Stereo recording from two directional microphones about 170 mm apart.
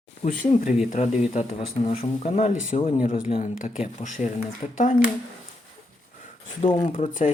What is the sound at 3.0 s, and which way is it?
Speech, 50° left (ahead or behind).